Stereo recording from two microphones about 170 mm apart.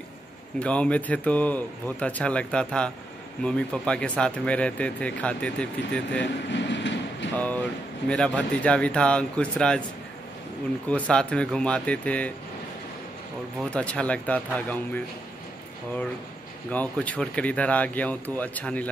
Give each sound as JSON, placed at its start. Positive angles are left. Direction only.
{"t": 0.6, "sound": "speech", "side_deg": 5}
{"t": 6.5, "sound": "train", "side_deg": 90}
{"t": 7.3, "sound": "speech", "side_deg": 10}
{"t": 10.9, "sound": "speech", "side_deg": 5}
{"t": 13.6, "sound": "speech", "side_deg": 5}
{"t": 16.7, "sound": "speech", "side_deg": 10}